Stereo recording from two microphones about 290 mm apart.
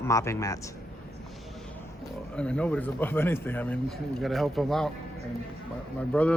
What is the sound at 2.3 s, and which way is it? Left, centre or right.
A man's voice, centre.